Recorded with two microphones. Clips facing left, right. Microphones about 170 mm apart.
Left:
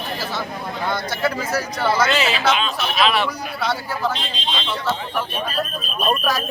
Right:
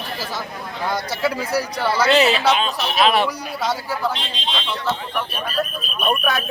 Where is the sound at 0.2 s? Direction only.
10° right (ahead or behind).